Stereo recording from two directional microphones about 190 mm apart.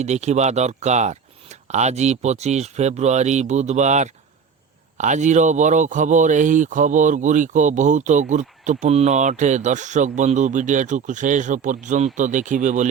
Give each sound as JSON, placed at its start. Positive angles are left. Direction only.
{"t": 0.0, "sound": "speech", "side_deg": -35}